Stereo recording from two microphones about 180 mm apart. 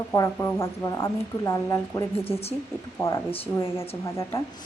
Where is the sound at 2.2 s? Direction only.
35° left (ahead or behind).